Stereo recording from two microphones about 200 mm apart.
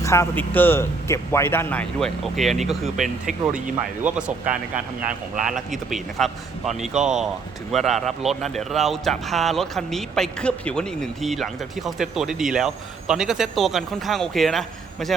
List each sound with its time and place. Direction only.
0.0 s a man's voice: 15° left (ahead or behind); by 3.3 s centre (ahead or behind)
4.5 s speech: 40° right (ahead or behind)
5.4 s speech: centre (ahead or behind)